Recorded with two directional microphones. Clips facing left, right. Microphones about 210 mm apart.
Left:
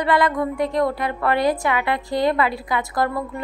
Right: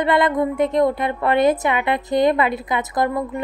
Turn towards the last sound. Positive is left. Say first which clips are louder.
# right 2 dB
turn(degrees=-20)  # may be behind; listen again after turning